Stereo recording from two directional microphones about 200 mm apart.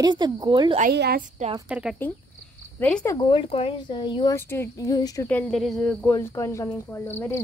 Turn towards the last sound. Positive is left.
turn(degrees=10)  # may be behind; listen again after turning